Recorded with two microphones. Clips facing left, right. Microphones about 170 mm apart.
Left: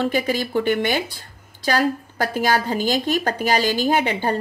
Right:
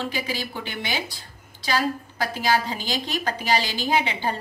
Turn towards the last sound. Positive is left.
turn(degrees=50)  # may be behind; listen again after turning